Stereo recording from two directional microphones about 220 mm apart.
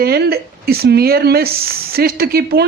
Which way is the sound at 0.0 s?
45° right (ahead or behind).